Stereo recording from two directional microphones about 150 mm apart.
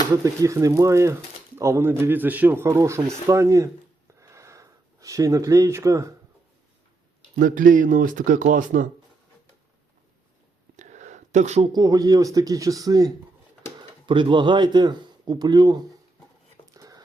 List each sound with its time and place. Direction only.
0.1 s speech: 20° right (ahead or behind)
4.2 s a sound: 20° right (ahead or behind)
7.3 s speech: 65° right (ahead or behind)
10.8 s a sound: 55° right (ahead or behind)
11.7 s speech: 25° right (ahead or behind)
16.7 s whispering: 25° right (ahead or behind)